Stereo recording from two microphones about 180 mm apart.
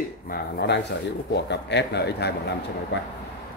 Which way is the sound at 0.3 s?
65° left (ahead or behind).